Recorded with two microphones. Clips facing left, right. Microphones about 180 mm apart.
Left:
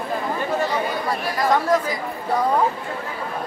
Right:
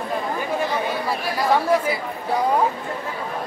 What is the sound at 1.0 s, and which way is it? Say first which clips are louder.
Chatter: even; 10° right (ahead or behind).